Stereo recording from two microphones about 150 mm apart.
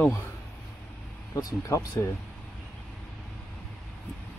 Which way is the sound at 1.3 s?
20° left (ahead or behind).